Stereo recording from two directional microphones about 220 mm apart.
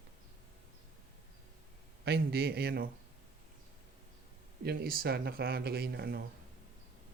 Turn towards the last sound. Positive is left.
turn(degrees=-45)  # may be behind; listen again after turning